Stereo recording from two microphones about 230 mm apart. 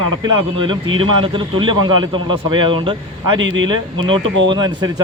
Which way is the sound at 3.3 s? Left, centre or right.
Right.